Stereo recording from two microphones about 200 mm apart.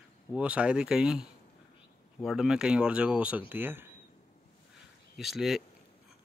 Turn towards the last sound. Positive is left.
turn(degrees=0)  # may be behind; listen again after turning